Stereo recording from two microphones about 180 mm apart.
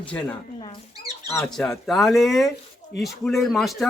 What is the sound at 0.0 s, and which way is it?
Speech, 5° left (ahead or behind).